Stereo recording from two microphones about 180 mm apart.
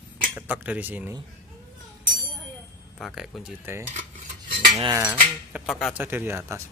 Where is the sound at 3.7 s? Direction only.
15° right (ahead or behind).